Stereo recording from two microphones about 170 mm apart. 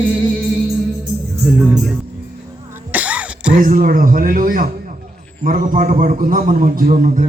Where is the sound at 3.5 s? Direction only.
50° right (ahead or behind).